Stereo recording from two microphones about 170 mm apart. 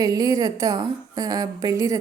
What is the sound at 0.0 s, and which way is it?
A woman's voice, 20° right (ahead or behind).